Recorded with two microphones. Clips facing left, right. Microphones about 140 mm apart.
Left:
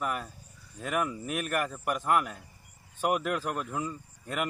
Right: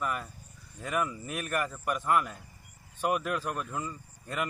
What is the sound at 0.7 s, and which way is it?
Speech, 15° left (ahead or behind).